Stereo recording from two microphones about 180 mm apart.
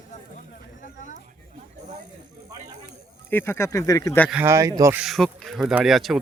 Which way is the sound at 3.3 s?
15° left (ahead or behind).